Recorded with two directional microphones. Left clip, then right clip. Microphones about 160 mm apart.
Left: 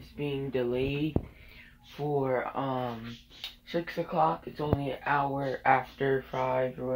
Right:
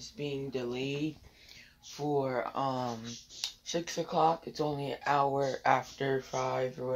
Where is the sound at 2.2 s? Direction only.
35° right (ahead or behind).